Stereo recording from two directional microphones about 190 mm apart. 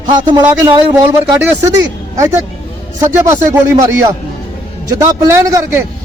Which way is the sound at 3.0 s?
15° right (ahead or behind).